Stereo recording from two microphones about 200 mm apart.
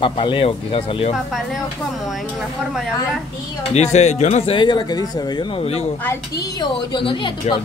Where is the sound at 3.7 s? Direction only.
35° left (ahead or behind).